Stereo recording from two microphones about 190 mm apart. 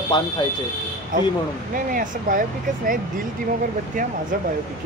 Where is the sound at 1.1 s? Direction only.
45° right (ahead or behind).